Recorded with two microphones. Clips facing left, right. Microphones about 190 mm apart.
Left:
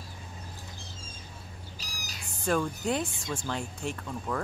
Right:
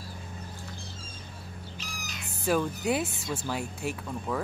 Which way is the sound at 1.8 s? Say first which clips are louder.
Right 4 dB; 35° left (ahead or behind).